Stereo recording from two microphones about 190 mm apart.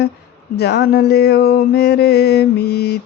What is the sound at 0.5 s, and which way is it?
Mantra, 60° left (ahead or behind).